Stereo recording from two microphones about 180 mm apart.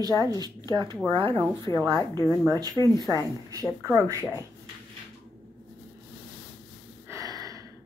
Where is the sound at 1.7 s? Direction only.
20° left (ahead or behind).